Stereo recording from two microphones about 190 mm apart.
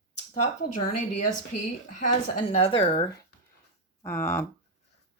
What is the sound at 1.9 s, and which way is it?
A woman's voice, 35° left (ahead or behind).